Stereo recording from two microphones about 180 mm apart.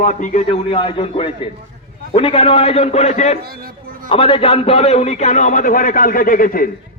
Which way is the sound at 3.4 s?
55° right (ahead or behind).